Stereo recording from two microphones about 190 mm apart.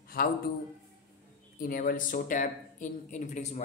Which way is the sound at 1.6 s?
50° left (ahead or behind).